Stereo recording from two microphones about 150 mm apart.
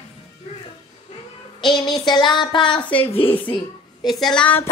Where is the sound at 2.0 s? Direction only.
30° left (ahead or behind).